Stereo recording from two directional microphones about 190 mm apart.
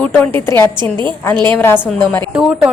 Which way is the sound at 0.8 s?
25° right (ahead or behind).